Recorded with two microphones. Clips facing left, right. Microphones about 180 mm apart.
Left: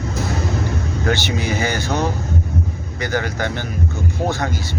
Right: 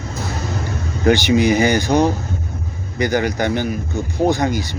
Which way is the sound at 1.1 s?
15° right (ahead or behind).